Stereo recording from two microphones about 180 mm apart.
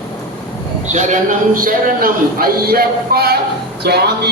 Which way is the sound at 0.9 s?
40° right (ahead or behind).